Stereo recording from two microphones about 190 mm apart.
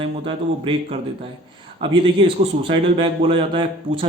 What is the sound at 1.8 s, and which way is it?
A man's voice, 25° right (ahead or behind).